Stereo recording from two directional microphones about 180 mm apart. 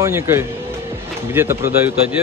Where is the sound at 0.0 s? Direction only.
15° right (ahead or behind).